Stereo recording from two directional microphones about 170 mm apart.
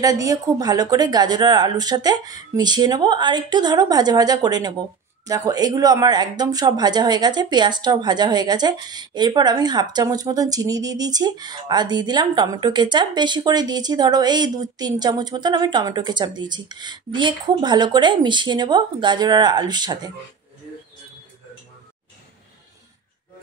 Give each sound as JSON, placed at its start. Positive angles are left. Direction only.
{"t": 0.0, "sound": "speech", "side_deg": -20}